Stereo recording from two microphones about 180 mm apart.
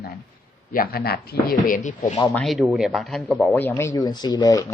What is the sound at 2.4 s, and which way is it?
A man's voice, centre (ahead or behind).